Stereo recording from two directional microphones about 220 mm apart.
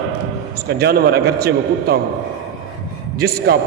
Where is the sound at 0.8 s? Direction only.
45° right (ahead or behind).